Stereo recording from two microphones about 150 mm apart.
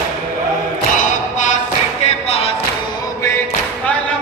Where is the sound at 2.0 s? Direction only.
40° left (ahead or behind).